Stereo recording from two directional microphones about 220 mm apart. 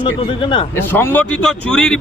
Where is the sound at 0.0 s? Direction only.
25° left (ahead or behind).